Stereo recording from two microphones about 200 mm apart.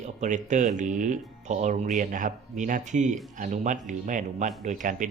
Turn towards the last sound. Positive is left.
turn(degrees=-40)  # may be behind; listen again after turning